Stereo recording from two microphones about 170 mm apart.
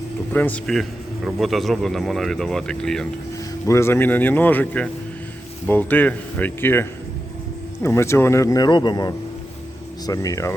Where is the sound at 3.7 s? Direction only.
15° left (ahead or behind).